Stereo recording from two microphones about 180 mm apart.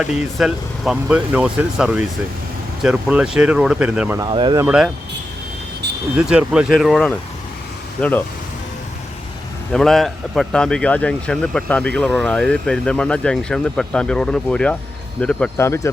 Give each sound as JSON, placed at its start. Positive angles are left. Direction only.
{"t": 0.0, "sound": "speech", "side_deg": -5}
{"t": 4.2, "sound": "speech", "side_deg": -25}
{"t": 4.6, "sound": "speech", "side_deg": -5}
{"t": 6.1, "sound": "speech", "side_deg": -5}
{"t": 9.7, "sound": "speech", "side_deg": 0}